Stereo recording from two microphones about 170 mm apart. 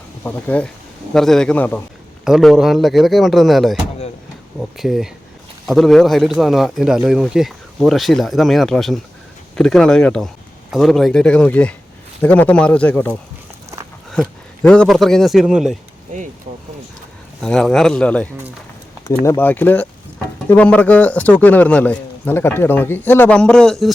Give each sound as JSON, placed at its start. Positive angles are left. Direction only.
{"t": 0.3, "sound": "a man's voice", "side_deg": 10}
{"t": 2.2, "sound": "a man's voice", "side_deg": 0}
{"t": 4.8, "sound": "a man's voice", "side_deg": 0}
{"t": 16.1, "sound": "speech", "side_deg": -50}
{"t": 17.4, "sound": "a man's voice", "side_deg": 5}